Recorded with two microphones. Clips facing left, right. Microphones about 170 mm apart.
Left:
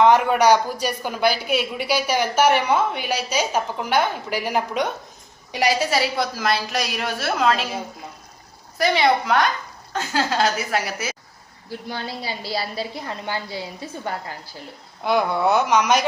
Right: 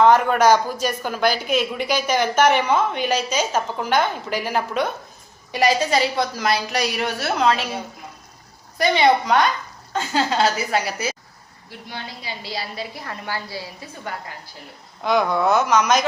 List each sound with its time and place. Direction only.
0.0 s a woman's voice: 15° left (ahead or behind)
8.8 s a woman's voice: centre (ahead or behind)
11.9 s a woman's voice: 40° left (ahead or behind); by 14.1 s 20° left (ahead or behind)
15.0 s speech: 10° left (ahead or behind)